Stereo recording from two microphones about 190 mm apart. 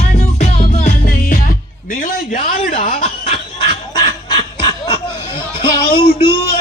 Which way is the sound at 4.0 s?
25° left (ahead or behind).